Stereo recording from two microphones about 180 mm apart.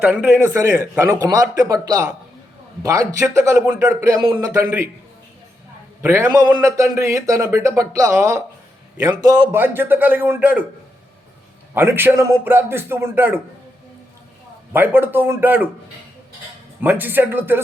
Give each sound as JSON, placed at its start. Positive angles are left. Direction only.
{"t": 0.0, "sound": "a man's voice", "side_deg": -10}
{"t": 6.0, "sound": "a man's voice", "side_deg": -15}
{"t": 11.7, "sound": "a man's voice", "side_deg": -10}
{"t": 14.7, "sound": "a man's voice", "side_deg": -10}
{"t": 16.8, "sound": "a man's voice", "side_deg": -10}